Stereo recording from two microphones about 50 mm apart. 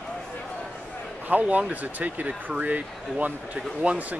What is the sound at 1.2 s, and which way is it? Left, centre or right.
Speech, right.